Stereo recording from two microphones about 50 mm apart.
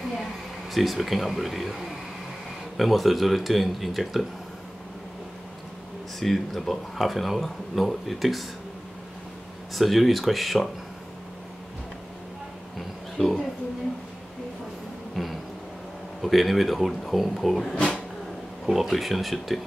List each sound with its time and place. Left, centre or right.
0.7 s speech: centre
2.8 s speech: centre
6.1 s speech: centre
9.8 s speech: centre
15.2 s a sound: centre
16.2 s speech: centre
17.7 s a sound: centre
18.7 s speech: centre